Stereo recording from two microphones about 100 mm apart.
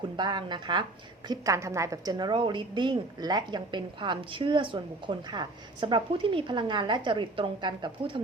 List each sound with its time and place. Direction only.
0.2 s a woman's voice: 45° right (ahead or behind)
1.3 s a woman's voice: 30° right (ahead or behind); by 8.2 s 55° right (ahead or behind)